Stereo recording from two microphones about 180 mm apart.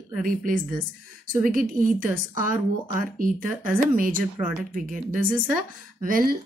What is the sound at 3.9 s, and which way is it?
Speech, 50° right (ahead or behind).